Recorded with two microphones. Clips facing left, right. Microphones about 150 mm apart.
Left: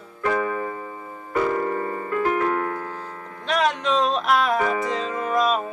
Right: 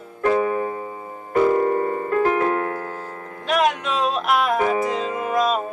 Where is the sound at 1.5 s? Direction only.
35° right (ahead or behind).